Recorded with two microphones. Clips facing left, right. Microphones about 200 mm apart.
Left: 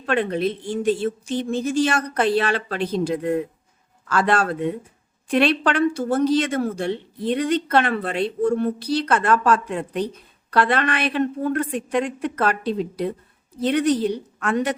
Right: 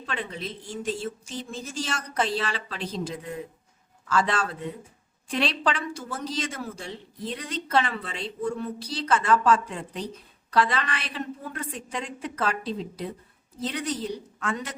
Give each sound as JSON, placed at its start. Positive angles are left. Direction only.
{"t": 0.0, "sound": "speech", "side_deg": 60}